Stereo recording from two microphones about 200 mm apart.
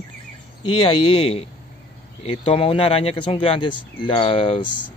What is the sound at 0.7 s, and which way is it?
Speech, 25° left (ahead or behind).